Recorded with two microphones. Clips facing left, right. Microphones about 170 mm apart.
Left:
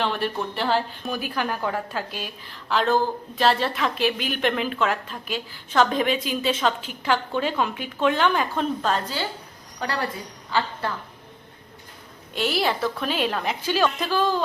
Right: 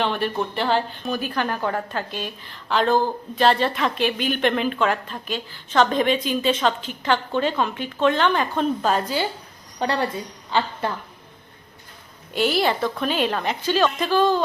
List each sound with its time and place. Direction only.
0.0 s speech: centre (ahead or behind)
8.8 s a woman's voice: 10° right (ahead or behind)
9.7 s a woman's voice: 25° right (ahead or behind)
12.3 s speech: centre (ahead or behind)